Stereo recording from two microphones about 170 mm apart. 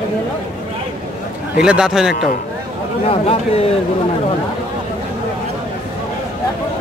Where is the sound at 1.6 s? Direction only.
5° right (ahead or behind).